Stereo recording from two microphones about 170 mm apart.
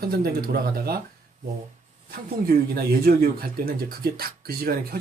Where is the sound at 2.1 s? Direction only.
60° right (ahead or behind).